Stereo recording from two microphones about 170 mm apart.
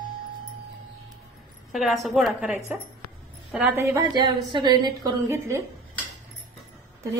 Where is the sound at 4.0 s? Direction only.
25° right (ahead or behind).